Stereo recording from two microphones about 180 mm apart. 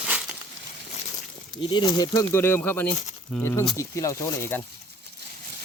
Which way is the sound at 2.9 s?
35° left (ahead or behind).